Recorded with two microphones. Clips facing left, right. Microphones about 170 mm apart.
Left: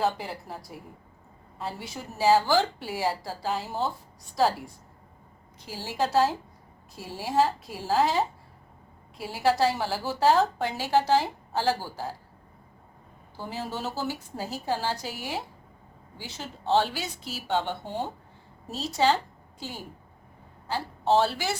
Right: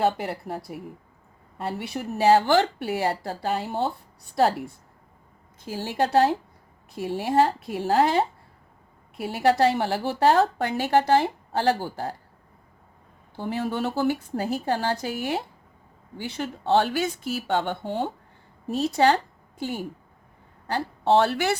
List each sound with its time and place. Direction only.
0.0 s a woman's voice: 60° right (ahead or behind)
5.5 s a woman's voice: 55° right (ahead or behind)
13.3 s a woman's voice: 60° right (ahead or behind)